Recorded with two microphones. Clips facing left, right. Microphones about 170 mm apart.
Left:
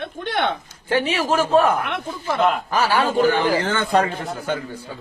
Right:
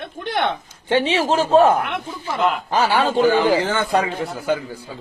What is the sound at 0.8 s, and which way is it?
Speech, 25° right (ahead or behind).